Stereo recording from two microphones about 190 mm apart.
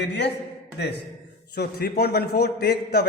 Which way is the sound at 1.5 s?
55° left (ahead or behind).